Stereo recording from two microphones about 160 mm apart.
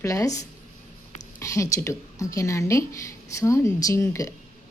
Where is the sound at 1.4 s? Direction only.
20° left (ahead or behind).